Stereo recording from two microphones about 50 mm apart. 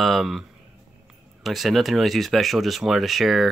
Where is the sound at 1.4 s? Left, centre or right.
Centre.